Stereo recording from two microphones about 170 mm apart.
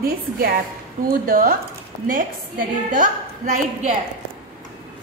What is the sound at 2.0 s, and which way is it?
A woman's voice, 55° right (ahead or behind).